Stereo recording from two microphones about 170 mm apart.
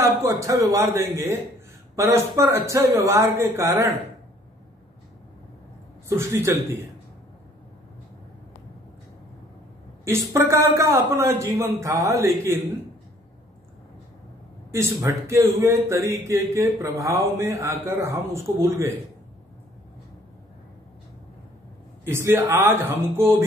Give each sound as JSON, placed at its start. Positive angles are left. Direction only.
{"t": 0.0, "sound": "a man's voice", "side_deg": -15}
{"t": 2.0, "sound": "a man's voice", "side_deg": -15}
{"t": 6.0, "sound": "a man's voice", "side_deg": -15}
{"t": 10.0, "sound": "a man's voice", "side_deg": -15}
{"t": 14.7, "sound": "a man's voice", "side_deg": -15}
{"t": 22.0, "sound": "a man's voice", "side_deg": -15}